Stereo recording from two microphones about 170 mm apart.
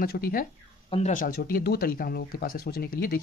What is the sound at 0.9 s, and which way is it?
Speech, 45° left (ahead or behind).